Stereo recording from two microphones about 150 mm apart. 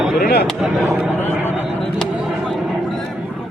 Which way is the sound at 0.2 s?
90° left.